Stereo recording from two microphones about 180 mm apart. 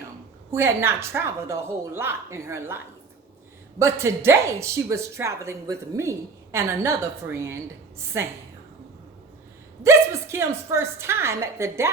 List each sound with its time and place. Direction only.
0.5 s a woman's voice: 15° right (ahead or behind)
9.8 s a woman's voice: 15° right (ahead or behind)